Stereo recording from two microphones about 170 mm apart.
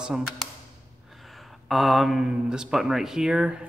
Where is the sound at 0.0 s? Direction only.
5° right (ahead or behind).